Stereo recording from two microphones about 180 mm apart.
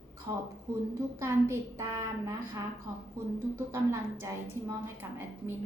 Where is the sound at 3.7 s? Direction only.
15° right (ahead or behind).